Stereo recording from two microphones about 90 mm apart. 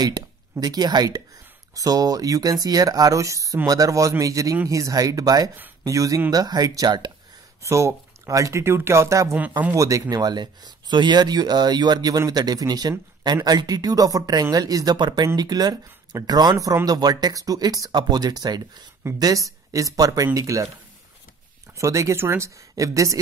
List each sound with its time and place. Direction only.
0.0 s speech: 45° right (ahead or behind)
7.6 s speech: 35° right (ahead or behind)
16.5 s speech: 40° right (ahead or behind)
21.7 s speech: 35° right (ahead or behind)